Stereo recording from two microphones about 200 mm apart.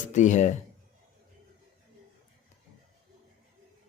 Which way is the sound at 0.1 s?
35° left (ahead or behind).